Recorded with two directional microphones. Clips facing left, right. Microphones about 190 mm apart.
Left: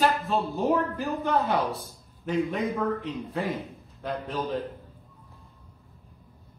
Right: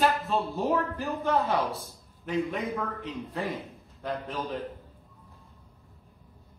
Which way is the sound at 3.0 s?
Centre (ahead or behind).